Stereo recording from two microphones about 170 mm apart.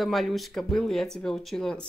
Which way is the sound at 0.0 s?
Centre (ahead or behind).